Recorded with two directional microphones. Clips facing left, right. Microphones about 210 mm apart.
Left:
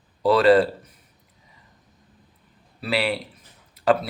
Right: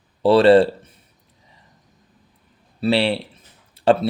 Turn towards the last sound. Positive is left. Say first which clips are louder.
# right 4 dB
turn(degrees=-30)  # may be behind; listen again after turning